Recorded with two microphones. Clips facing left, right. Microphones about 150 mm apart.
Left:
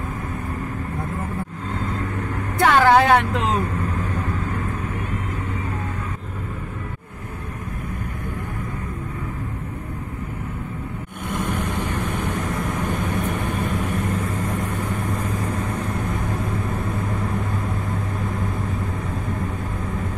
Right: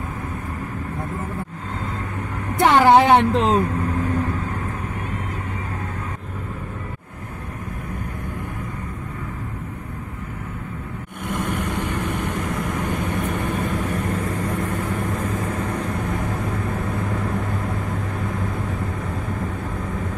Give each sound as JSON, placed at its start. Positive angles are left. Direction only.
{"t": 2.6, "sound": "a woman's voice", "side_deg": -20}